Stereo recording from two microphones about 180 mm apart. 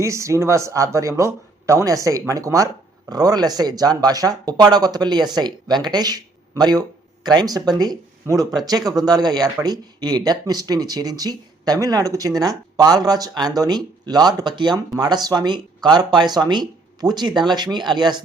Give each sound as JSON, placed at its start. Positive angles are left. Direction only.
{"t": 0.0, "sound": "speech", "side_deg": -15}